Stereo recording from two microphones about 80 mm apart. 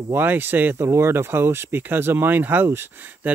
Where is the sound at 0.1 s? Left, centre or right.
Right.